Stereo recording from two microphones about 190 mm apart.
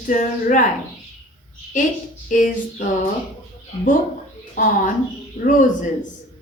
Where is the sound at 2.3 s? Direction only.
45° left (ahead or behind).